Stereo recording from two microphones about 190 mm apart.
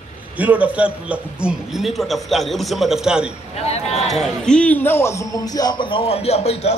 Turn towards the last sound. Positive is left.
turn(degrees=35)  # may be behind; listen again after turning